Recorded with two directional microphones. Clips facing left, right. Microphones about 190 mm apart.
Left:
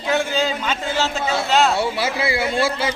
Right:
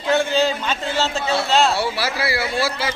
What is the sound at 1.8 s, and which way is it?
Speech, 20° left (ahead or behind).